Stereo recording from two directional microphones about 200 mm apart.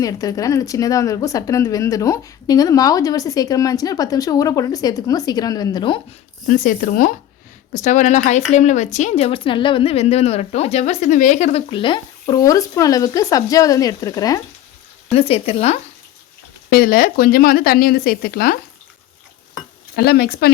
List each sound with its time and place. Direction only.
0.0 s speech: 20° left (ahead or behind)
6.5 s a woman's voice: 45° left (ahead or behind); by 14.4 s 20° left (ahead or behind)
15.1 s a woman's voice: 30° left (ahead or behind)
16.6 s speech: 45° left (ahead or behind)
20.0 s speech: 55° left (ahead or behind)